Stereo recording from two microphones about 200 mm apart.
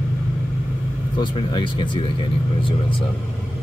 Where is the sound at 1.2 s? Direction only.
25° left (ahead or behind).